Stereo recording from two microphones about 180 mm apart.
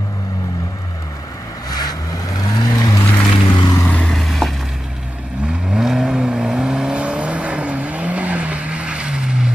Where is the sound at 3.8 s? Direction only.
5° left (ahead or behind).